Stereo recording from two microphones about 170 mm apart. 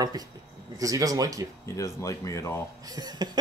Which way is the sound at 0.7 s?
20° right (ahead or behind).